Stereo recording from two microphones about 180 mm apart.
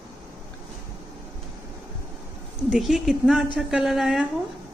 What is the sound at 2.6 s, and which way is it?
Speech, centre (ahead or behind).